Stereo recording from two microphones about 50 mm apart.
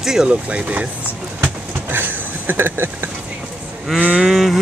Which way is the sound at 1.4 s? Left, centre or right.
Right.